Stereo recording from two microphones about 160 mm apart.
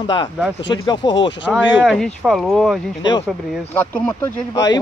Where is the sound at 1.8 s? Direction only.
Centre (ahead or behind).